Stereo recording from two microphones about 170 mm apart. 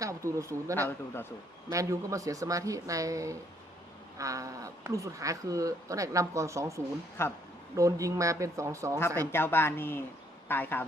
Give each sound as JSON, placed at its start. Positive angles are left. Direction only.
{"t": 0.0, "sound": "speech", "side_deg": -20}
{"t": 0.8, "sound": "speech", "side_deg": 15}
{"t": 1.7, "sound": "speech", "side_deg": -20}
{"t": 7.2, "sound": "speech", "side_deg": 15}
{"t": 7.8, "sound": "speech", "side_deg": -20}
{"t": 9.0, "sound": "speech", "side_deg": 15}